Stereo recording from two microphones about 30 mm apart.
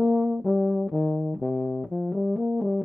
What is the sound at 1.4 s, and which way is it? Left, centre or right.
Music, left.